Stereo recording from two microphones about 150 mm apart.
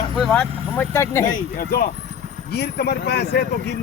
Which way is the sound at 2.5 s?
90° left.